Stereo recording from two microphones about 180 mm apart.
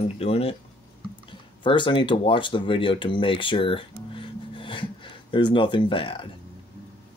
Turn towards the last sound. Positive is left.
turn(degrees=30)  # may be behind; listen again after turning